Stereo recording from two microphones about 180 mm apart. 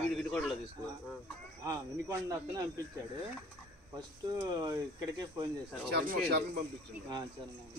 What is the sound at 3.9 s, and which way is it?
Speech, 20° right (ahead or behind).